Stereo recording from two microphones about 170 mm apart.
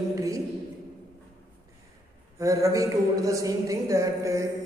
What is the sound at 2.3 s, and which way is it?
A man's voice, 20° right (ahead or behind).